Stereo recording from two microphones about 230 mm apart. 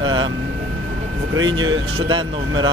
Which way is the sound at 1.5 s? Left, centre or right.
Centre.